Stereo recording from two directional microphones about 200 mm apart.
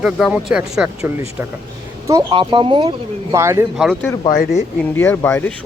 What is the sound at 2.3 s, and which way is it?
Speech, 25° right (ahead or behind).